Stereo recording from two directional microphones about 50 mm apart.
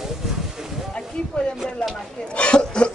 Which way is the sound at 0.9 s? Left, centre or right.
Centre.